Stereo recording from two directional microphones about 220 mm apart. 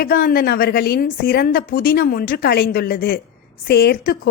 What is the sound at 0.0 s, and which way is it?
A woman's voice, 40° left (ahead or behind).